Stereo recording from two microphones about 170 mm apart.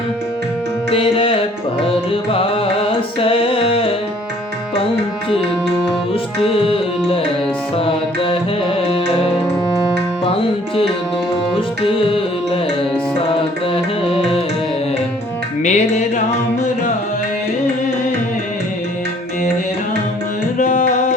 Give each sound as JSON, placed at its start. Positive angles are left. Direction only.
{"t": 0.9, "sound": "music", "side_deg": 30}
{"t": 6.4, "sound": "music", "side_deg": 35}
{"t": 7.9, "sound": "music", "side_deg": 30}
{"t": 10.2, "sound": "tabla", "side_deg": 35}
{"t": 11.9, "sound": "music", "side_deg": 30}
{"t": 15.6, "sound": "music", "side_deg": 45}
{"t": 20.6, "sound": "music", "side_deg": 45}